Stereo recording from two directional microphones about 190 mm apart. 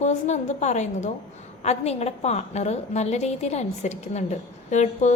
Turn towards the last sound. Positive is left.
turn(degrees=40)  # may be behind; listen again after turning